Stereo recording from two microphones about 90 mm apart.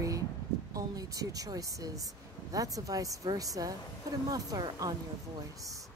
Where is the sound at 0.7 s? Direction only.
40° right (ahead or behind).